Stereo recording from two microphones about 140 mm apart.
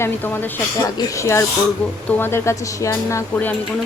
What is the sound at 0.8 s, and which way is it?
Speech, 25° left (ahead or behind).